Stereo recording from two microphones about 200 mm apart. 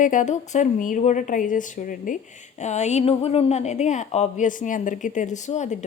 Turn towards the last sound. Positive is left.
turn(degrees=35)  # may be behind; listen again after turning